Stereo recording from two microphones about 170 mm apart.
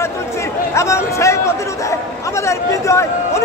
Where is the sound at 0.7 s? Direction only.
15° left (ahead or behind).